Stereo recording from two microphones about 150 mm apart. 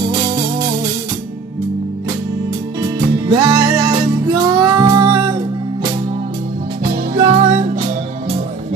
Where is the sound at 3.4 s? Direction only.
20° right (ahead or behind).